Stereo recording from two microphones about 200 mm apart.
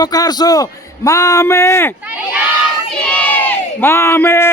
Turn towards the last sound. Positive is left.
turn(degrees=10)  # may be behind; listen again after turning